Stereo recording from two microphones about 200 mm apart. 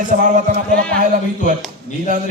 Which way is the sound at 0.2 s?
40° right (ahead or behind).